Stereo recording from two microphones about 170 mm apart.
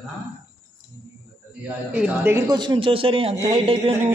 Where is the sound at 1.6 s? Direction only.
10° right (ahead or behind).